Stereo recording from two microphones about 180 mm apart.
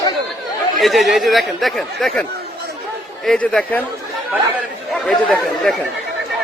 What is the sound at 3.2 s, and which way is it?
Speech, 5° left (ahead or behind).